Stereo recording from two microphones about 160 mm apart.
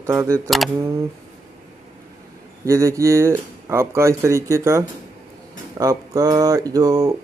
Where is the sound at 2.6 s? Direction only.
20° right (ahead or behind).